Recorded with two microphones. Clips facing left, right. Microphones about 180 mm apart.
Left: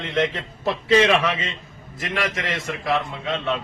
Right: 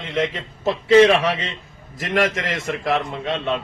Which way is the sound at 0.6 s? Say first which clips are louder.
Right 5 dB; 25° right (ahead or behind).